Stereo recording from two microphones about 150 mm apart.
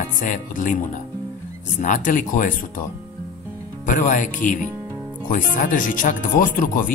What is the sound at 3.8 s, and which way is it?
Speech, 60° left (ahead or behind).